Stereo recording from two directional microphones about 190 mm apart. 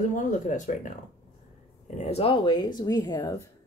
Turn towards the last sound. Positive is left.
turn(degrees=20)  # may be behind; listen again after turning